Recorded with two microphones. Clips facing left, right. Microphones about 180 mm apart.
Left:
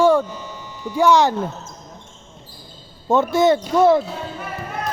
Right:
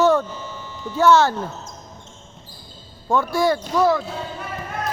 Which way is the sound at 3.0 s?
20° left (ahead or behind).